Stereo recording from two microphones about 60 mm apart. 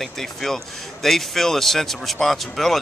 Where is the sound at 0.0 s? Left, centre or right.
Centre.